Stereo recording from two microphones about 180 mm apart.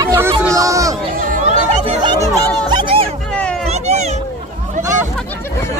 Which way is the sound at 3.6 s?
35° right (ahead or behind).